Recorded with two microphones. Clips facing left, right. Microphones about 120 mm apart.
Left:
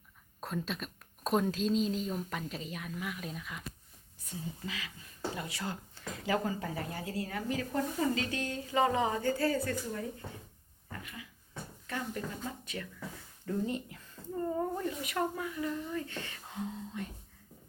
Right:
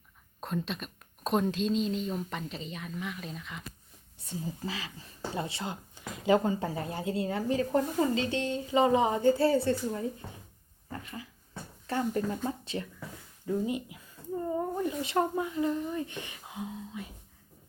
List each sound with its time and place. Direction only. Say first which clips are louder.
0.3 s speech: right 3 dB; centre (ahead or behind)
4.2 s speech: right 5 dB; 30° right (ahead or behind)
10.9 s dog: right 5 dB; 30° right (ahead or behind)
11.9 s speech: right 8 dB; 35° right (ahead or behind)
13.4 s a sound: right 3 dB; 10° right (ahead or behind)
15.0 s speech: right 5 dB; 25° right (ahead or behind); by 17.1 s 5° right (ahead or behind)